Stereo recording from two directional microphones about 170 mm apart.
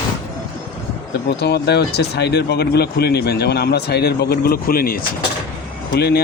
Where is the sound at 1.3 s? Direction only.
75° left (ahead or behind).